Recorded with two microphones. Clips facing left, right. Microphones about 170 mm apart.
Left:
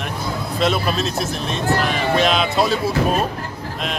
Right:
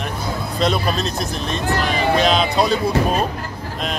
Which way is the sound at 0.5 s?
Centre (ahead or behind).